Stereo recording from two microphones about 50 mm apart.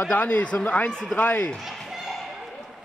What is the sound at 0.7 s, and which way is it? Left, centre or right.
Speech, left.